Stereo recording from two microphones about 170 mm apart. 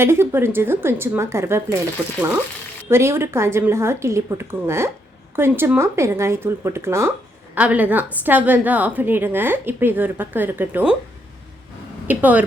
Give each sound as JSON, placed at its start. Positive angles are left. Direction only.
{"t": 0.0, "sound": "a woman's voice", "side_deg": -15}
{"t": 2.9, "sound": "a woman's voice", "side_deg": -15}
{"t": 12.0, "sound": "a woman's voice", "side_deg": -10}